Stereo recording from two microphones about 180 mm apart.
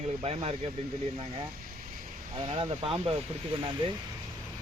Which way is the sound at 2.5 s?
30° right (ahead or behind).